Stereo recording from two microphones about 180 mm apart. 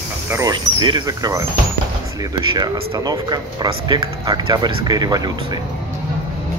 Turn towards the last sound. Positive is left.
turn(degrees=-20)  # may be behind; listen again after turning